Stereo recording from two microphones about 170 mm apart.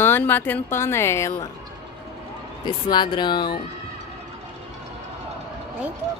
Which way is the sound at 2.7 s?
25° left (ahead or behind).